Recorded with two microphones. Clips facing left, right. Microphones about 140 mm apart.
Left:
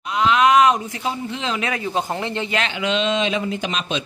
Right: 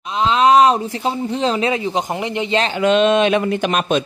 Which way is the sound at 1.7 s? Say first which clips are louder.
Right 4 dB; 20° right (ahead or behind).